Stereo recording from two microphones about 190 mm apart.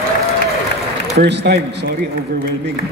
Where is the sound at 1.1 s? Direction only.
60° right (ahead or behind).